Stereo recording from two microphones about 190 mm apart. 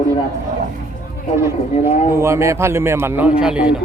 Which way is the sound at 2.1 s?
15° right (ahead or behind).